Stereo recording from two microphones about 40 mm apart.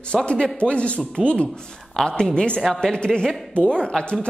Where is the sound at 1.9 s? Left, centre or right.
Centre.